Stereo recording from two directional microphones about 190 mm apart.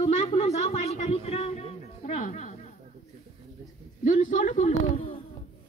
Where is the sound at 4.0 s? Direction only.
40° left (ahead or behind).